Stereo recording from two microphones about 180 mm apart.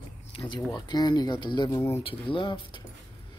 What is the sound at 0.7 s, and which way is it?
Speech, 25° left (ahead or behind).